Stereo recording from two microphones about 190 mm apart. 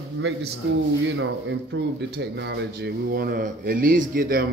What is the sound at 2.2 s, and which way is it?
A man's voice, 65° right (ahead or behind).